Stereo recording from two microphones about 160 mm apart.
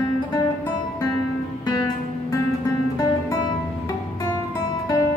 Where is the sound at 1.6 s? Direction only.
25° left (ahead or behind).